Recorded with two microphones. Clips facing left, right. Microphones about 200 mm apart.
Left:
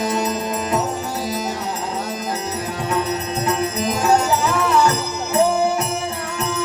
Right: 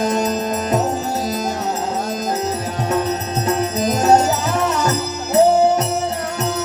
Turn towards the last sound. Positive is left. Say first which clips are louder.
# right 5 dB
turn(degrees=-40)  # may be behind; listen again after turning